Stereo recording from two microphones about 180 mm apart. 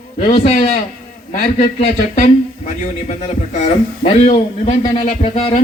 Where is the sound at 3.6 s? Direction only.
35° left (ahead or behind).